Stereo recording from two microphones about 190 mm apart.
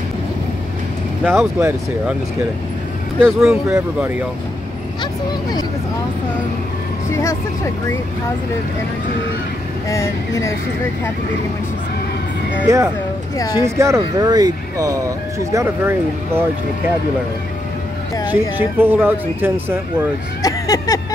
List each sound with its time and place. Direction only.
1.2 s speech: 10° right (ahead or behind)
3.4 s speech: 10° right (ahead or behind)
9.8 s speech: 15° left (ahead or behind)
12.6 s speech: 15° right (ahead or behind)
13.4 s speech: 20° left (ahead or behind)
13.7 s speech: 15° right (ahead or behind)
18.3 s speech: 10° right (ahead or behind)
20.4 s a sound: 15° left (ahead or behind)